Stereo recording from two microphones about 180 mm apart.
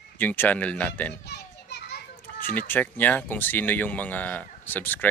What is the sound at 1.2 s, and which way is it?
Children playing, 65° left (ahead or behind).